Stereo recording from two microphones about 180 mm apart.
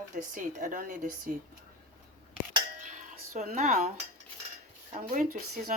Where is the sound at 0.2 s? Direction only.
45° right (ahead or behind).